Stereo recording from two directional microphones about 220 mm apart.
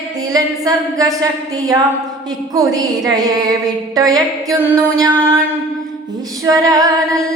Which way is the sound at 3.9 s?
15° right (ahead or behind).